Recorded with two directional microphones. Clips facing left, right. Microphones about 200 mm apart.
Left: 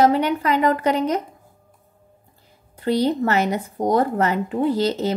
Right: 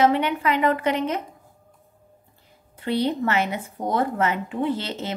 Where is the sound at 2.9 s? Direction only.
40° left (ahead or behind).